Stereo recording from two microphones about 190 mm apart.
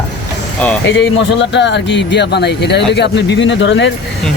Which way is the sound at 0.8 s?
75° left (ahead or behind).